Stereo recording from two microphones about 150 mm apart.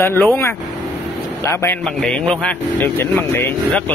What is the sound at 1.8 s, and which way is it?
Speech, 5° left (ahead or behind).